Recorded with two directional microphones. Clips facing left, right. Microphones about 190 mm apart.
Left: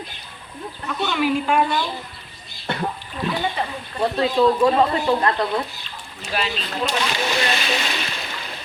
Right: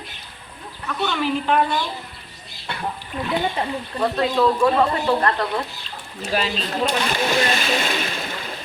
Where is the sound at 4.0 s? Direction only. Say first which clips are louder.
Left 1 dB; 15° left (ahead or behind).